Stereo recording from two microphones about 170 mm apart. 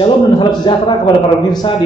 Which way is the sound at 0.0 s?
25° left (ahead or behind).